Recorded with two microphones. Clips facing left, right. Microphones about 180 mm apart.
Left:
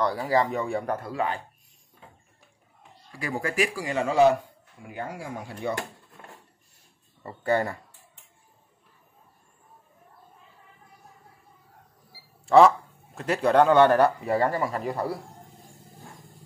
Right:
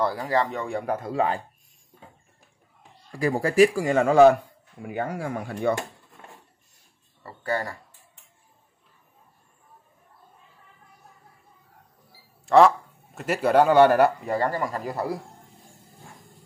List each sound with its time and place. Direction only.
0.0 s speech: centre (ahead or behind)
0.3 s speech: 10° left (ahead or behind)
0.8 s a man's voice: 15° right (ahead or behind)
1.1 s speech: 35° right (ahead or behind)
3.1 s speech: 40° right (ahead or behind); by 5.8 s 55° right (ahead or behind)
7.2 s speech: 20° left (ahead or behind)
12.4 s speech: centre (ahead or behind)
14.2 s speech: 10° left (ahead or behind)